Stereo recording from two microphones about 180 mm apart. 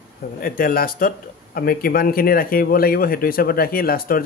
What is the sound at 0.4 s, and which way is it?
Speech, 55° left (ahead or behind).